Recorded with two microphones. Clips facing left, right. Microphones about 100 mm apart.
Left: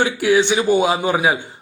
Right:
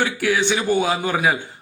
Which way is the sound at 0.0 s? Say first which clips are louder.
Left 4 dB; 20° left (ahead or behind).